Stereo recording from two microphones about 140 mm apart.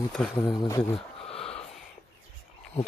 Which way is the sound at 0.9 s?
45° left (ahead or behind).